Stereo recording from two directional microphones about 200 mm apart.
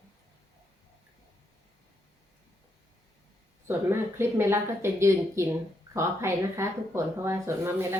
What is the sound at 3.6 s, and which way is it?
Speech, 10° right (ahead or behind).